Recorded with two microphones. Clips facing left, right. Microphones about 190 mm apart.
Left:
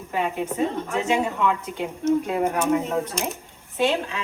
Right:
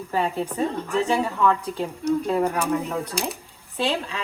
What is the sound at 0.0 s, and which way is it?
A woman's voice, 35° right (ahead or behind).